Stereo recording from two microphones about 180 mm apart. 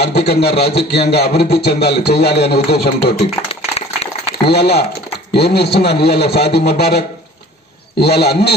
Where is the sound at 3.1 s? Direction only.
35° left (ahead or behind).